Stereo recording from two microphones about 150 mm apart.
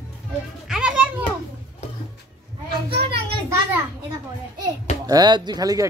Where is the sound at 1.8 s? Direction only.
45° left (ahead or behind).